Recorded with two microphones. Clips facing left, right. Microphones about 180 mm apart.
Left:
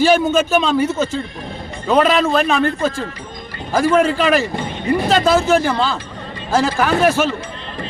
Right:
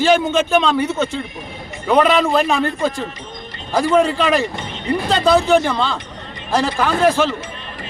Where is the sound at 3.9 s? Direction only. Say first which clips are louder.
Right 1 dB; 5° left (ahead or behind).